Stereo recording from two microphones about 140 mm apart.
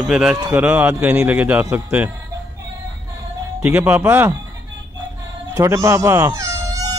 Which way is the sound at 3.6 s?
10° right (ahead or behind).